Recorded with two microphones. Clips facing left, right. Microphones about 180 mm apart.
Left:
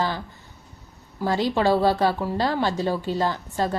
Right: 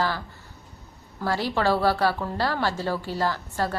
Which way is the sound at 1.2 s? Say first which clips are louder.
Left 3 dB; 20° left (ahead or behind).